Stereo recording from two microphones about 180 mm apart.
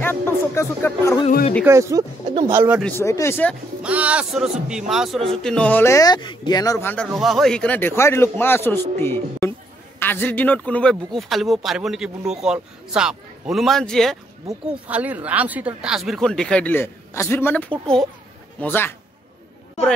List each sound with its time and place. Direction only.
0.0 s speech: 10° left (ahead or behind)
1.6 s speech: 15° right (ahead or behind)
2.8 s a man's voice: 15° left (ahead or behind)
3.8 s a man's voice: 5° right (ahead or behind); by 7.1 s 10° left (ahead or behind)
7.1 s a man's voice: centre (ahead or behind)
14.9 s a man's voice: 10° right (ahead or behind); by 18.9 s 10° left (ahead or behind)